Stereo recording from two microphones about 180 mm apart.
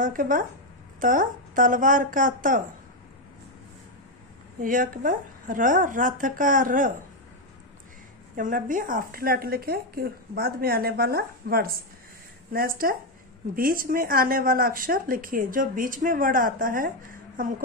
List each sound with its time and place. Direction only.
0.0 s speech: 50° right (ahead or behind)
4.6 s speech: 50° right (ahead or behind)
8.4 s a woman's voice: 50° right (ahead or behind)